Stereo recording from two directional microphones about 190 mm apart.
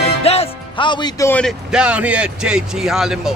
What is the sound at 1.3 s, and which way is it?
Speech, 5° left (ahead or behind).